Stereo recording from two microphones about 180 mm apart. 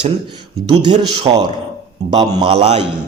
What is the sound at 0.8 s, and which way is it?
A man's voice, 25° right (ahead or behind).